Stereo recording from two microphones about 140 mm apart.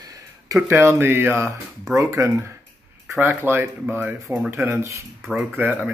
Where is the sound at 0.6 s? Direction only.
15° right (ahead or behind).